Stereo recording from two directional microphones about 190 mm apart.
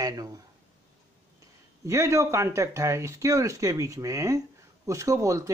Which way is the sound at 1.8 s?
15° right (ahead or behind).